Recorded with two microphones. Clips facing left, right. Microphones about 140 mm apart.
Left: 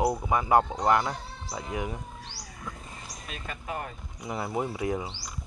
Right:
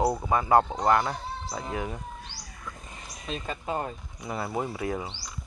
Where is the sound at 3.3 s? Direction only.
30° right (ahead or behind).